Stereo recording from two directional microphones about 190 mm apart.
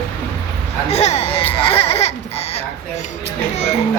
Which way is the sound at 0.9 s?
35° left (ahead or behind).